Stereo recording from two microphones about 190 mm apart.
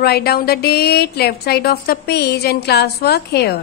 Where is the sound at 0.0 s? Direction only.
55° left (ahead or behind).